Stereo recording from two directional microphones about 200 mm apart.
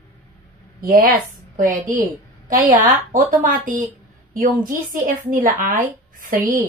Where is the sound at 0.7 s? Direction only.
45° right (ahead or behind).